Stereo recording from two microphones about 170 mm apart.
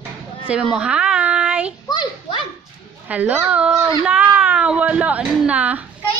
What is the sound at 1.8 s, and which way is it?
Children playing, 25° left (ahead or behind).